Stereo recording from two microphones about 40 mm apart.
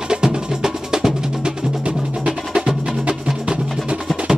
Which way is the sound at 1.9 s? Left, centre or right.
Right.